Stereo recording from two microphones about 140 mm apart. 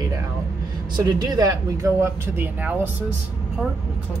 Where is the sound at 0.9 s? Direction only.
30° right (ahead or behind).